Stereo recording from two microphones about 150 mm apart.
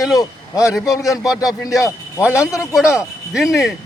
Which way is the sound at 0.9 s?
20° left (ahead or behind).